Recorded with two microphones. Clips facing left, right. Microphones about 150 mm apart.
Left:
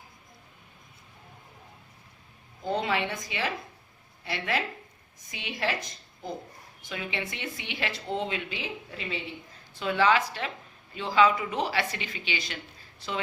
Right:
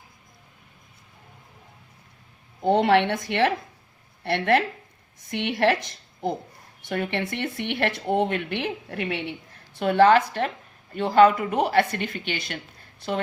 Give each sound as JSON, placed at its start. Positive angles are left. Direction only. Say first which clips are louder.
{"t": 2.6, "sound": "a woman's voice", "louder": "right 9 dB", "side_deg": -70}
{"t": 9.7, "sound": "speech", "louder": "right 7 dB", "side_deg": -55}